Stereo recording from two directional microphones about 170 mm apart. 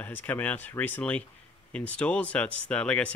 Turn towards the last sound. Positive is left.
turn(degrees=5)  # may be behind; listen again after turning